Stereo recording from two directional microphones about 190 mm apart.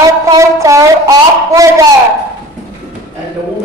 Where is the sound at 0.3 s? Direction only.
15° right (ahead or behind).